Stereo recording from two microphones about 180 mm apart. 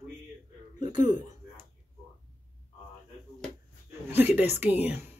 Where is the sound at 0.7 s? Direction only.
45° left (ahead or behind).